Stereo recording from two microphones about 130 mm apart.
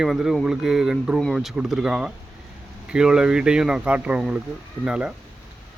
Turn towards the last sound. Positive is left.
turn(degrees=-10)  # may be behind; listen again after turning